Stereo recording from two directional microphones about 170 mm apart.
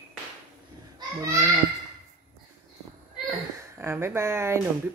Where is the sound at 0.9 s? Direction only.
15° right (ahead or behind).